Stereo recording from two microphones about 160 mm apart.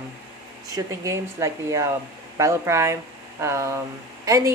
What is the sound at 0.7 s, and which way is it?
A woman's voice, 20° right (ahead or behind).